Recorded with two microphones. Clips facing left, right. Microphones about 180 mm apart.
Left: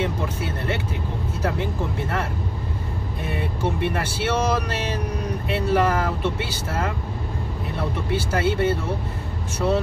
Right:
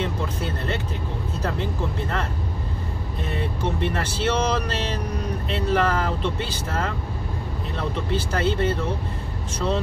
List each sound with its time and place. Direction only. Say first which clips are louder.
0.0 s vehicle: left 1 dB; 10° left (ahead or behind)
1.4 s speech: left 2 dB; 10° left (ahead or behind)
3.3 s speech: left 1 dB; 10° left (ahead or behind)
8.1 s speech: left 2 dB; 10° left (ahead or behind)